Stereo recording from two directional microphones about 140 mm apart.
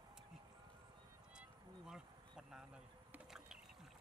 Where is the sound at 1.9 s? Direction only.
5° right (ahead or behind).